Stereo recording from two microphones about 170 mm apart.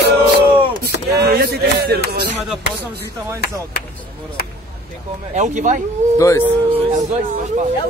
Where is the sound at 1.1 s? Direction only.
65° right (ahead or behind).